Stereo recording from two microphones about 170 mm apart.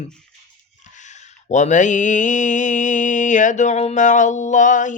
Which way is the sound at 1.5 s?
45° left (ahead or behind).